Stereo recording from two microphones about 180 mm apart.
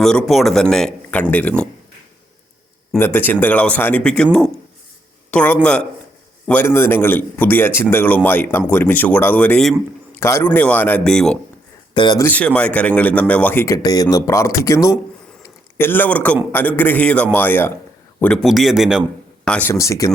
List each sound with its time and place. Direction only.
0.0 s speech: 5° left (ahead or behind)
3.0 s speech: 10° left (ahead or behind)
11.9 s speech: 25° left (ahead or behind)
12.2 s a man's voice: 10° left (ahead or behind)
19.5 s speech: 10° left (ahead or behind)